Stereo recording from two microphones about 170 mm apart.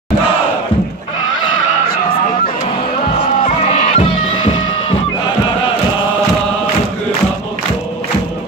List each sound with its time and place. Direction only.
3.4 s music: 45° left (ahead or behind)